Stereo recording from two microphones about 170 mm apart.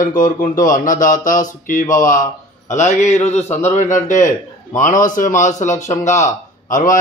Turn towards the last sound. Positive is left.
turn(degrees=50)  # may be behind; listen again after turning